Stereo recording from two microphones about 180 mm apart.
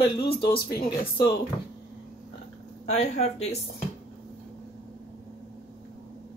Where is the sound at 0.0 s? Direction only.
65° left (ahead or behind).